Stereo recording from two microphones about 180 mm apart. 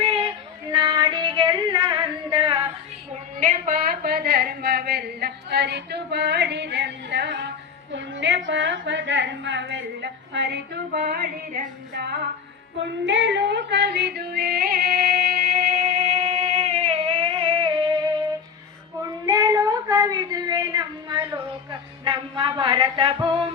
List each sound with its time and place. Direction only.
0.0 s female singing: 30° right (ahead or behind)
3.4 s a sound: 45° right (ahead or behind); by 7.4 s 70° right (ahead or behind)
7.9 s a woman's voice: 85° right; by 11.6 s 60° right (ahead or behind)
12.0 s music: 65° right (ahead or behind)
12.8 s female singing: 85° right; by 18.0 s 25° right (ahead or behind)
19.0 s a sound: 20° right (ahead or behind)
21.7 s music: 25° right (ahead or behind)